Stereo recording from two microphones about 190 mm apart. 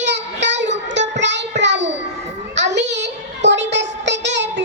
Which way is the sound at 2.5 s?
70° right (ahead or behind).